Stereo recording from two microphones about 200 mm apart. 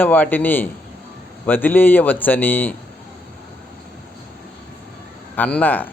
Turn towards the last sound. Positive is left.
turn(degrees=10)  # may be behind; listen again after turning